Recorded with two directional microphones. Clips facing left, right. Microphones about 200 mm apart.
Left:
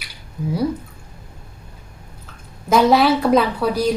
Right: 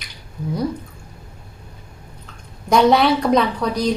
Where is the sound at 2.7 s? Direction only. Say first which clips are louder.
Even; centre (ahead or behind).